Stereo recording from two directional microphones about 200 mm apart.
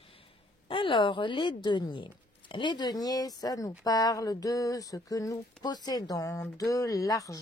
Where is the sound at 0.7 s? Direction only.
25° left (ahead or behind).